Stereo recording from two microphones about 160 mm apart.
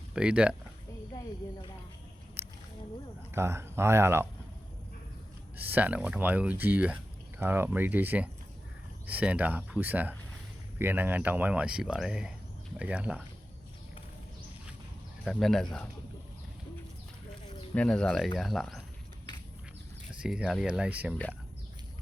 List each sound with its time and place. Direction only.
0.1 s speech: 5° right (ahead or behind)
3.3 s speech: 15° right (ahead or behind)
5.6 s speech: 10° right (ahead or behind)
15.2 s speech: centre (ahead or behind)
17.7 s speech: 5° left (ahead or behind)
20.2 s speech: 5° right (ahead or behind)